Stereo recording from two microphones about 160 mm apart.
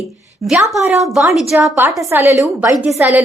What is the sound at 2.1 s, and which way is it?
A woman's voice, 15° right (ahead or behind).